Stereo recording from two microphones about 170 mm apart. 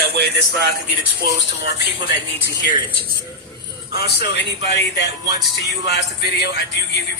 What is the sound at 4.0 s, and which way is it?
Music, 80° left.